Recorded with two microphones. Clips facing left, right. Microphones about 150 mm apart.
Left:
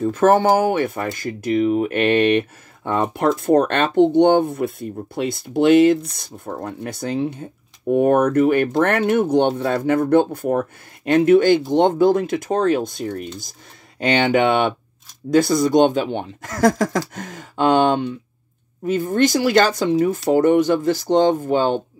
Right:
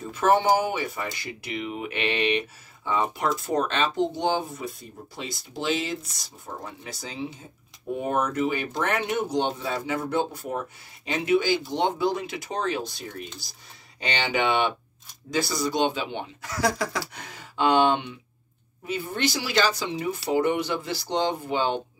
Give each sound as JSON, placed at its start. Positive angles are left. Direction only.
{"t": 0.0, "sound": "speech", "side_deg": 50}